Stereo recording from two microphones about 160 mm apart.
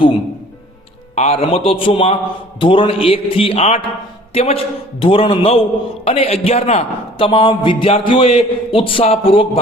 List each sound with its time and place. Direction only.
1.1 s a man's voice: 40° left (ahead or behind)